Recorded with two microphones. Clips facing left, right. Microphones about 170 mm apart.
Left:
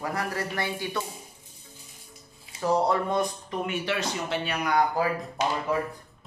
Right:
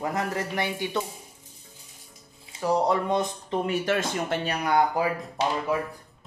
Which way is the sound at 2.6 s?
15° right (ahead or behind).